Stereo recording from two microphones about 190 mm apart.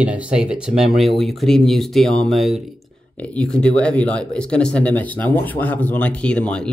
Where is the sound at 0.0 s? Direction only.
5° right (ahead or behind).